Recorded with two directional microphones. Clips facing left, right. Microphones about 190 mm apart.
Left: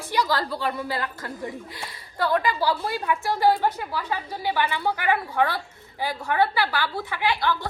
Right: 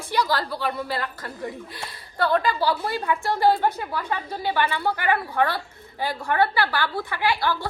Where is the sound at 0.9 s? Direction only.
15° left (ahead or behind).